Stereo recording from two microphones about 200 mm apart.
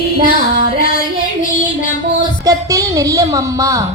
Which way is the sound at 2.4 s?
15° right (ahead or behind).